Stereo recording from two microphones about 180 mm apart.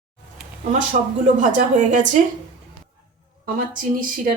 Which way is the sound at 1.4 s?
45° right (ahead or behind).